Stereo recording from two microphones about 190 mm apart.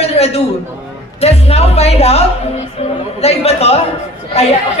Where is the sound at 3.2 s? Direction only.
30° left (ahead or behind).